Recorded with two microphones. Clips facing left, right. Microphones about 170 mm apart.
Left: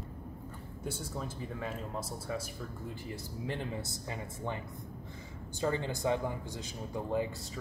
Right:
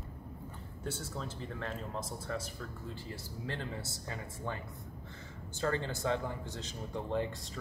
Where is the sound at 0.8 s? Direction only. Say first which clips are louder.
Left 1 dB; 10° left (ahead or behind).